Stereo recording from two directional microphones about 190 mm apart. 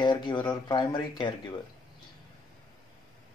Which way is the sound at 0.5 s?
20° left (ahead or behind).